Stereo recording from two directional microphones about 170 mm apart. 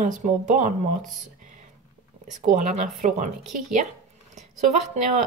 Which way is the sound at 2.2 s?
50° right (ahead or behind).